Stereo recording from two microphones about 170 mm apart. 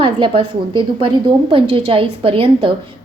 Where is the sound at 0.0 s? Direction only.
30° right (ahead or behind).